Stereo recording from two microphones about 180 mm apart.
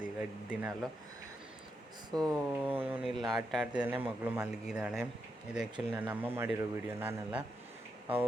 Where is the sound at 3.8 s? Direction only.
10° right (ahead or behind).